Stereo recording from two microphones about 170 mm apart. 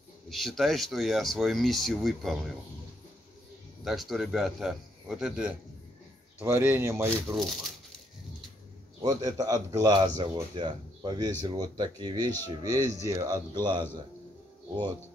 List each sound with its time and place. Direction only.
0.3 s speech: centre (ahead or behind)
3.8 s speech: centre (ahead or behind)
7.3 s speech: centre (ahead or behind)
9.0 s speech: 20° right (ahead or behind)